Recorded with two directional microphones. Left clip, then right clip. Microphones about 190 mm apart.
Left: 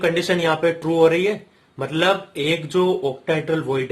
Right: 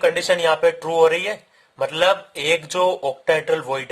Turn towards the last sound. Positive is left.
turn(degrees=-45)  # may be behind; listen again after turning